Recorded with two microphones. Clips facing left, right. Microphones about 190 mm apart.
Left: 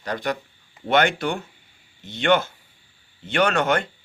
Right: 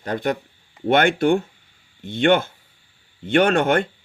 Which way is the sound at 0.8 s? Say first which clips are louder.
Right 4 dB; 55° right (ahead or behind).